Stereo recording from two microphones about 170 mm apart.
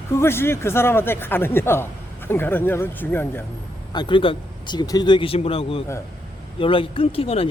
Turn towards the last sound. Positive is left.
turn(degrees=35)  # may be behind; listen again after turning